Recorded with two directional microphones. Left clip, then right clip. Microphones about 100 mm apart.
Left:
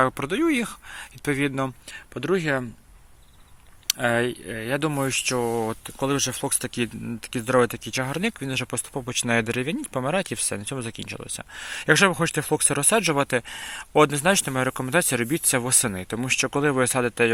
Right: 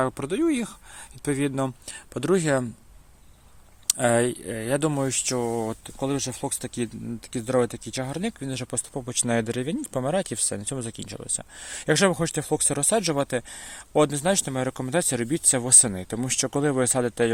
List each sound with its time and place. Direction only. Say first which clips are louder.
0.0 s speech: left 3 dB; 5° right (ahead or behind); by 1.7 s 20° right (ahead or behind)
1.9 s speech: right 3 dB; 60° right (ahead or behind)
3.8 s speech: right 1 dB; 45° right (ahead or behind)
4.9 s speech: left 2 dB; 10° right (ahead or behind)
9.0 s speech: left 3 dB; 10° right (ahead or behind)